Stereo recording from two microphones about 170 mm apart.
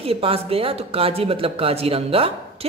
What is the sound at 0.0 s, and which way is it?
Speech, 35° right (ahead or behind).